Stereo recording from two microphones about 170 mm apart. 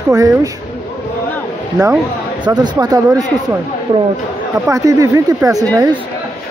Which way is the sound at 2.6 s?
25° right (ahead or behind).